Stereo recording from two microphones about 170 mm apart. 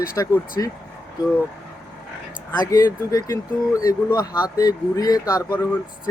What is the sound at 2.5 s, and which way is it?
Speech, 20° left (ahead or behind).